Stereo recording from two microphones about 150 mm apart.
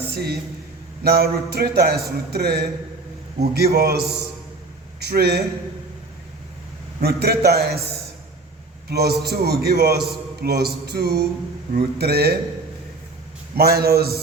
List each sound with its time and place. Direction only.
0.1 s a man's voice: 90° right
7.0 s a man's voice: 90° right
8.9 s a man's voice: 90° right
13.6 s a man's voice: 90° right